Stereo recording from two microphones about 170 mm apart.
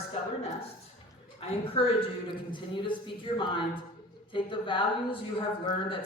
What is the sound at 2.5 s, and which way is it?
Speech, 30° left (ahead or behind).